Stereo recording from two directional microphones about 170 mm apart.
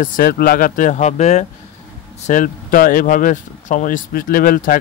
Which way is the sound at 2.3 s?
55° left (ahead or behind).